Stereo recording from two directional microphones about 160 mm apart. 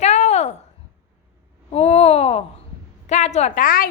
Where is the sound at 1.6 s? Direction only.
40° left (ahead or behind); by 3.9 s 60° left (ahead or behind).